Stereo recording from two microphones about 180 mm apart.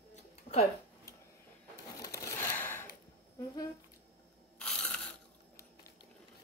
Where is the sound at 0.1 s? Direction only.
35° left (ahead or behind).